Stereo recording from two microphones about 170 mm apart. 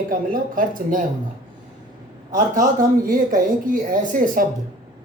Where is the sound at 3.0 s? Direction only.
55° right (ahead or behind).